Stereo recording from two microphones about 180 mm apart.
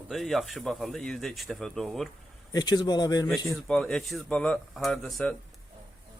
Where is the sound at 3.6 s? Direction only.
5° left (ahead or behind).